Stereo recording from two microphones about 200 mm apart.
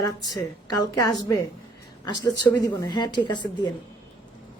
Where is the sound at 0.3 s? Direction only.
20° left (ahead or behind).